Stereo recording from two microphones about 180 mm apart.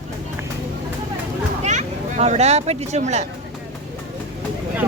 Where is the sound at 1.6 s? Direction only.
40° right (ahead or behind).